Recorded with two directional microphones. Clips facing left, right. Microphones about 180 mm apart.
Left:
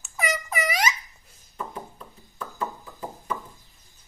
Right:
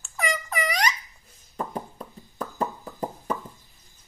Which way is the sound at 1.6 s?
40° right (ahead or behind).